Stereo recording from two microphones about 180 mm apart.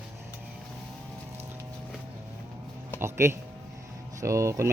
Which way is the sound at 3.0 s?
15° right (ahead or behind).